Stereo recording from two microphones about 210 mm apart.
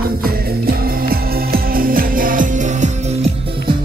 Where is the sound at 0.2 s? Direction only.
45° right (ahead or behind).